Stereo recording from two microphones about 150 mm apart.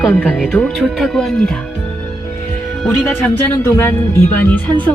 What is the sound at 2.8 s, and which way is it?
Speech, 5° left (ahead or behind).